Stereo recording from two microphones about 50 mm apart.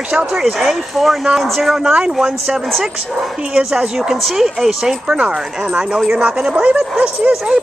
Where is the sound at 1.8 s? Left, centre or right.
Centre.